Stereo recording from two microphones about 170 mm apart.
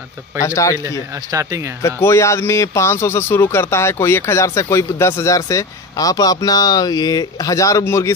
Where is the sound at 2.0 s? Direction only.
15° left (ahead or behind).